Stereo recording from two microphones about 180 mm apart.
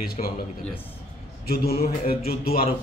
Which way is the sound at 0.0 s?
55° left (ahead or behind).